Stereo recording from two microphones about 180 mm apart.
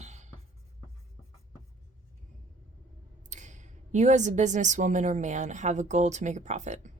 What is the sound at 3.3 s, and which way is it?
A woman's voice, 40° right (ahead or behind).